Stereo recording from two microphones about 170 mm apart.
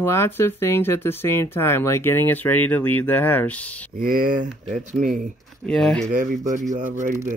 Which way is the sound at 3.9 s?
55° right (ahead or behind).